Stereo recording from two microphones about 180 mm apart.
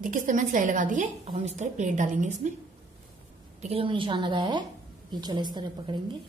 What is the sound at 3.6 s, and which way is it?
A woman's voice, 30° right (ahead or behind).